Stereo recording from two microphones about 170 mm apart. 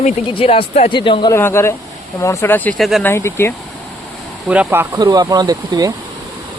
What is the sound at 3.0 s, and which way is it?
Speech, 15° left (ahead or behind).